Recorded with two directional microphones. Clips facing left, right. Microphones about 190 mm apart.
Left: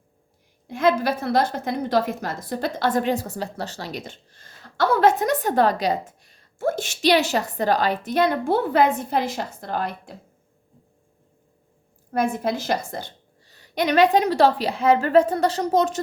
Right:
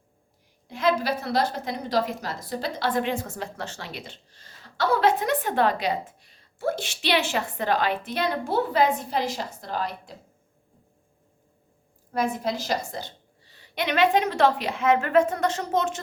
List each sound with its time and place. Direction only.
0.7 s a woman's voice: 50° left (ahead or behind)
12.1 s a woman's voice: 55° left (ahead or behind)